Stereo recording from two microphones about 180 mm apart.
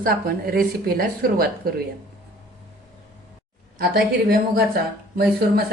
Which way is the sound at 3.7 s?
60° right (ahead or behind).